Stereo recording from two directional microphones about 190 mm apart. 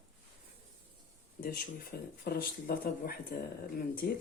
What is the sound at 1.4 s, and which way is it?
Speech, 50° left (ahead or behind).